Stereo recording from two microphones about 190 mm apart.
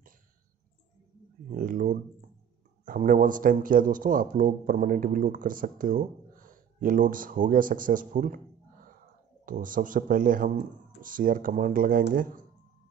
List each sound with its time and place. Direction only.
1.5 s speech: 45° right (ahead or behind)
9.5 s speech: 45° right (ahead or behind)